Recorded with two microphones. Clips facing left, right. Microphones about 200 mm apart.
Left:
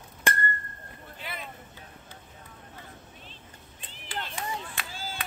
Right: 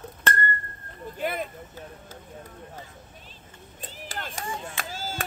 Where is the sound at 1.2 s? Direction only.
50° right (ahead or behind).